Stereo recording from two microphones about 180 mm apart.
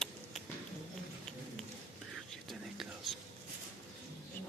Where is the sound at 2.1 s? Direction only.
Centre (ahead or behind).